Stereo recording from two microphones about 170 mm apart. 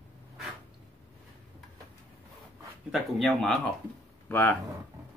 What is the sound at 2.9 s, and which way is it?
Speech, centre (ahead or behind).